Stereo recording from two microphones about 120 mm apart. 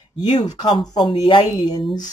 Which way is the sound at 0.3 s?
40° left (ahead or behind).